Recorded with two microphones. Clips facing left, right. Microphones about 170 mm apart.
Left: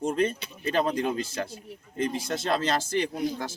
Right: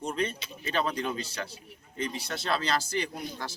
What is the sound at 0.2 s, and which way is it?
Speech, 55° left (ahead or behind).